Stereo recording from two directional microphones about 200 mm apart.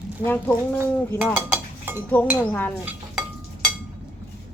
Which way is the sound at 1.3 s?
10° right (ahead or behind).